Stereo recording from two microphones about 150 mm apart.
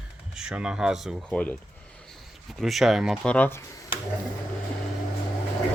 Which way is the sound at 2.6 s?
Centre (ahead or behind).